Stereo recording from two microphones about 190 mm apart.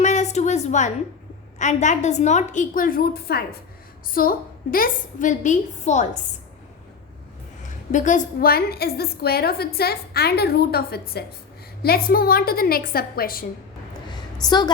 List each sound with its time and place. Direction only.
0.0 s a sound: 35° left (ahead or behind)
1.5 s a woman's voice: 40° left (ahead or behind)
7.9 s a woman's voice: 40° left (ahead or behind)
14.4 s a woman's voice: 20° left (ahead or behind)